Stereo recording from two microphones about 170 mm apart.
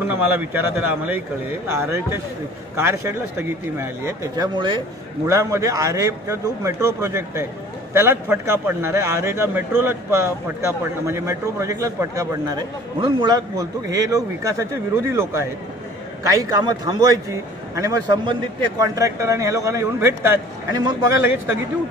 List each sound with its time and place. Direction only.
0.1 s a man's voice: 10° right (ahead or behind)